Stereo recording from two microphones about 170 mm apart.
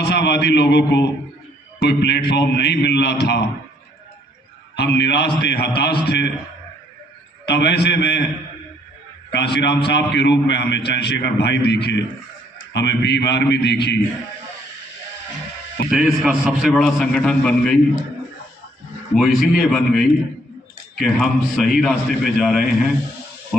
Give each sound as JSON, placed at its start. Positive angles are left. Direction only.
{"t": 0.0, "sound": "a man's voice", "side_deg": 80}
{"t": 4.8, "sound": "a man's voice", "side_deg": 80}
{"t": 7.4, "sound": "a man's voice", "side_deg": 80}
{"t": 9.3, "sound": "a man's voice", "side_deg": 85}
{"t": 15.9, "sound": "a man's voice", "side_deg": -5}
{"t": 19.1, "sound": "a man's voice", "side_deg": 0}